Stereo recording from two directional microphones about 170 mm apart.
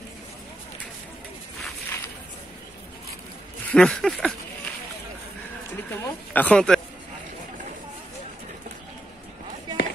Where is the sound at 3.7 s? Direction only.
5° left (ahead or behind).